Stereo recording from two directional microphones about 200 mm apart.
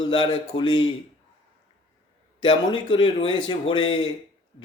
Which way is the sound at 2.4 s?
25° left (ahead or behind).